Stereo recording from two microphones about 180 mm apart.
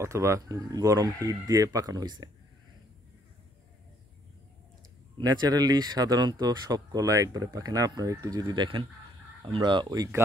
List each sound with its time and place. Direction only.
0.0 s speech: 15° right (ahead or behind)
5.1 s speech: 25° right (ahead or behind)